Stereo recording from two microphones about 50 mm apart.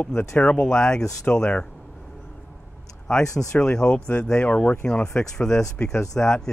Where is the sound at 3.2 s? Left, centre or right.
Left.